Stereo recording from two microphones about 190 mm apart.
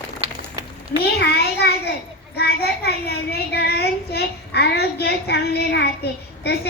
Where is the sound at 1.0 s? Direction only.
55° left (ahead or behind).